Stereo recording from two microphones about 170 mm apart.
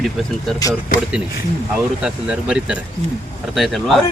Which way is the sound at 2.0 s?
5° right (ahead or behind).